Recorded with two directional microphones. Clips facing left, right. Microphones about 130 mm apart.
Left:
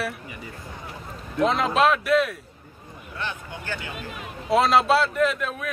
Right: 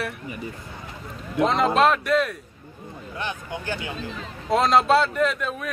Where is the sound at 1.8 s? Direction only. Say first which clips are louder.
Left 2 dB; centre (ahead or behind).